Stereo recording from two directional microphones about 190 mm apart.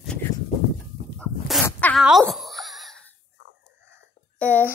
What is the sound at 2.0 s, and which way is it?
Wail, centre (ahead or behind).